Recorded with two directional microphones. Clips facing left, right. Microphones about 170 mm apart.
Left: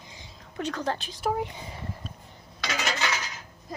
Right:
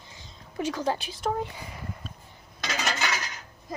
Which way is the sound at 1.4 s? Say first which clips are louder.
Left 1 dB; 30° left (ahead or behind).